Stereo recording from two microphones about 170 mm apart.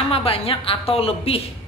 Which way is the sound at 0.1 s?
35° left (ahead or behind).